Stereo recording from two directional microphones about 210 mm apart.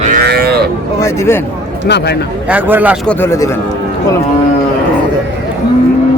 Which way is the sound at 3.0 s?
10° left (ahead or behind).